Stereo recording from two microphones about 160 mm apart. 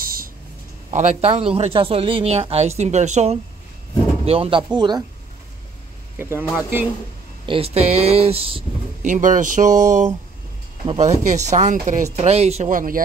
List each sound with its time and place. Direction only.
0.0 s a sound: 65° right (ahead or behind)
0.9 s speech: 45° right (ahead or behind)
4.3 s speech: 35° right (ahead or behind)
6.1 s speech: 15° right (ahead or behind)
7.4 s speech: 35° right (ahead or behind)
9.0 s speech: 55° right (ahead or behind)
12.2 s speech: 40° right (ahead or behind)
12.7 s a man's voice: 60° right (ahead or behind)